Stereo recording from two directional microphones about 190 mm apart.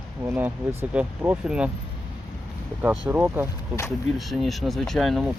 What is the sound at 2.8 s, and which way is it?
Speech, 5° right (ahead or behind).